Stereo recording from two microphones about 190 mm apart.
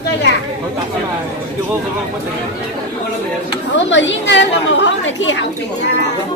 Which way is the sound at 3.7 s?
75° left (ahead or behind).